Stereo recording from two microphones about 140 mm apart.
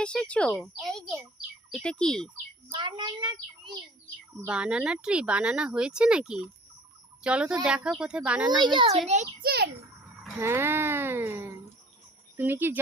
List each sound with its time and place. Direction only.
0.0 s speech: 5° left (ahead or behind)
2.6 s a child's voice: 40° right (ahead or behind)
4.4 s speech: 10° right (ahead or behind)
8.4 s a child's voice: 30° right (ahead or behind)
10.3 s speech: 15° right (ahead or behind)